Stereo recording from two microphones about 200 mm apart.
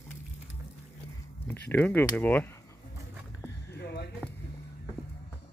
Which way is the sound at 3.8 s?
55° left (ahead or behind).